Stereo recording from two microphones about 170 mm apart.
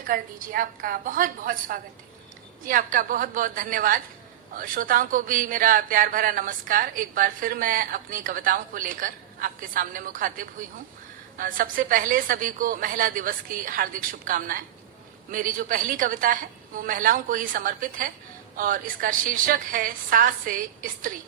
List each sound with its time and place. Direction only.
0.1 s a woman's voice: 55° right (ahead or behind)